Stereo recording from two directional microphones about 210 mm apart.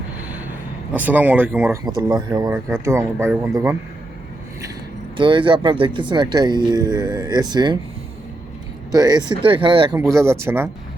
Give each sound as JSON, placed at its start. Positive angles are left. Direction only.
{"t": 0.9, "sound": "speech", "side_deg": -10}
{"t": 5.1, "sound": "speech", "side_deg": -25}
{"t": 8.9, "sound": "speech", "side_deg": -15}